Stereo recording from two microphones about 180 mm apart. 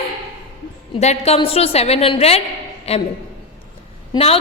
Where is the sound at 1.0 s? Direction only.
35° left (ahead or behind).